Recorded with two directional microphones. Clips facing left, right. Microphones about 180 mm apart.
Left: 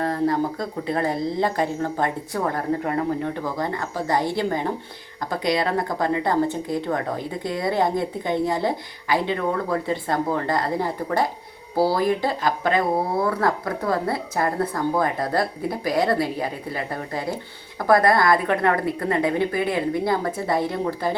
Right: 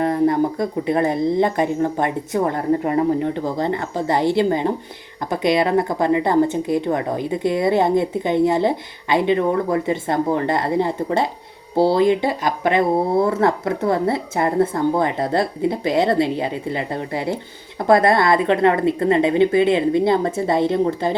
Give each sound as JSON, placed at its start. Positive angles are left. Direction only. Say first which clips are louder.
{"t": 0.0, "sound": "speech", "louder": "right 5 dB", "side_deg": -20}